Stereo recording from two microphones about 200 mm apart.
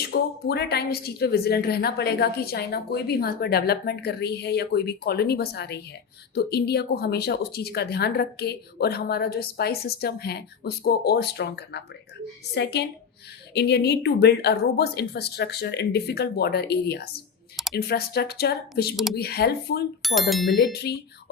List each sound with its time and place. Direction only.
0.1 s a woman's voice: 55° left (ahead or behind)
20.0 s speech: centre (ahead or behind)
20.9 s speech: 55° left (ahead or behind)